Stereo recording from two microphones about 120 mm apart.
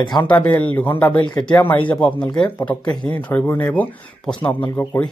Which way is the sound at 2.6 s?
35° left (ahead or behind).